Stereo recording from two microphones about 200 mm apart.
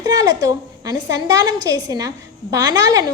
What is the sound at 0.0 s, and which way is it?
A woman's voice, 20° right (ahead or behind).